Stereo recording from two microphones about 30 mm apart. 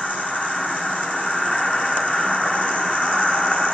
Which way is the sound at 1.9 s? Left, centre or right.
Left.